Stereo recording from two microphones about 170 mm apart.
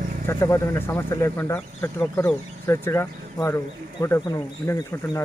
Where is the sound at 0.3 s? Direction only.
15° left (ahead or behind).